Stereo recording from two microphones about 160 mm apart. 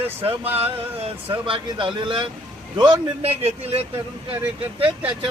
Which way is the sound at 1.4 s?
30° right (ahead or behind).